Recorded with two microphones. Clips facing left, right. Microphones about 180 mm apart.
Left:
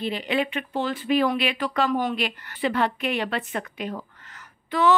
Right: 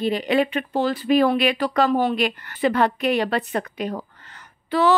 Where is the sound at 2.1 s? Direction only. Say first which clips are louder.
Right 5 dB; 45° right (ahead or behind).